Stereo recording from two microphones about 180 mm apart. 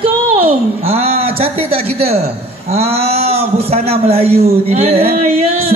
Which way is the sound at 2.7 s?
35° right (ahead or behind).